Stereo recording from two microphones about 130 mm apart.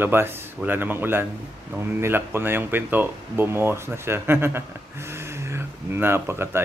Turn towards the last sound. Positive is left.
turn(degrees=-20)  # may be behind; listen again after turning